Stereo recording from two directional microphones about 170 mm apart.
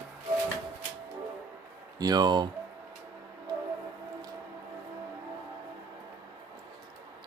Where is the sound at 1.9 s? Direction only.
25° right (ahead or behind).